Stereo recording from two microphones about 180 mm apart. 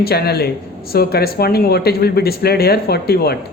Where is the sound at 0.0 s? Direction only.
60° left (ahead or behind).